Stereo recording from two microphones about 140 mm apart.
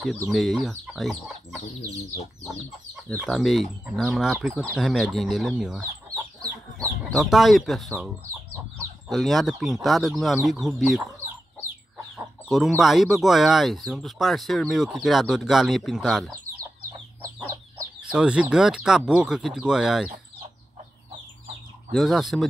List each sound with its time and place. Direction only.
0.3 s speech: centre (ahead or behind)
3.3 s speech: centre (ahead or behind)
6.0 s chicken: 25° right (ahead or behind)
7.1 s speech: centre (ahead or behind)
9.1 s speech: centre (ahead or behind)
12.2 s speech: centre (ahead or behind)
18.1 s speech: 5° right (ahead or behind)
21.9 s speech: centre (ahead or behind)